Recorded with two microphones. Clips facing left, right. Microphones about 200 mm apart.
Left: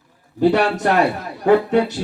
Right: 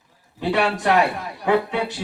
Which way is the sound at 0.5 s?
40° left (ahead or behind).